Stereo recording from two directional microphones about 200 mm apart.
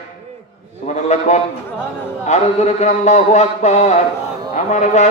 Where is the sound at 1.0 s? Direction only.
35° left (ahead or behind).